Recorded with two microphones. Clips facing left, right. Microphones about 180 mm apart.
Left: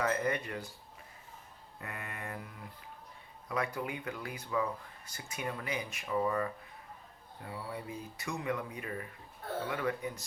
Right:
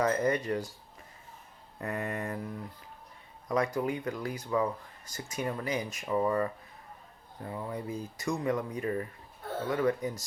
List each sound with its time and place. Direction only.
0.0 s speech: 40° right (ahead or behind)
1.8 s speech: 40° right (ahead or behind)